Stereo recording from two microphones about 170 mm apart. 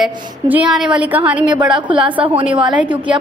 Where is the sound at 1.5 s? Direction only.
25° right (ahead or behind).